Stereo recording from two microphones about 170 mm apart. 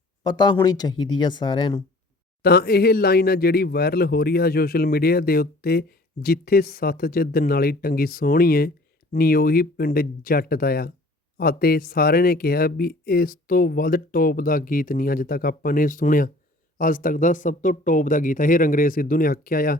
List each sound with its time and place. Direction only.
0.3 s speech: 25° left (ahead or behind)
2.4 s speech: 65° left (ahead or behind)